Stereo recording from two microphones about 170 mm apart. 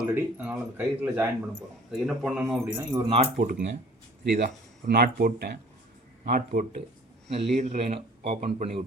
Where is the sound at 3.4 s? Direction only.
45° right (ahead or behind).